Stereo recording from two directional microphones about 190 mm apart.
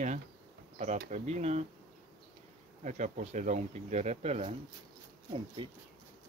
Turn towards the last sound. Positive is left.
turn(degrees=-25)  # may be behind; listen again after turning